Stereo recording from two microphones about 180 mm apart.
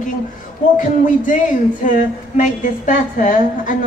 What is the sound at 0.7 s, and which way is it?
A woman's voice, 45° left (ahead or behind).